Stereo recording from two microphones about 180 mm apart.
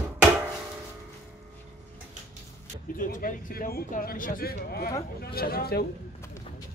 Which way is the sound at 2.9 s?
50° left (ahead or behind).